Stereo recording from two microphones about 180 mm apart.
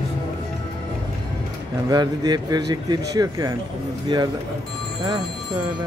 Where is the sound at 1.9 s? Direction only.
20° right (ahead or behind).